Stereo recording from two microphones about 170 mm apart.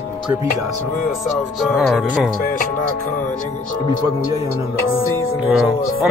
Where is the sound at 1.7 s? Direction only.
Centre (ahead or behind).